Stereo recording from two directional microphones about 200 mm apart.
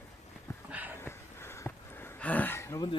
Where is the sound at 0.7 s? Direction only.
10° right (ahead or behind).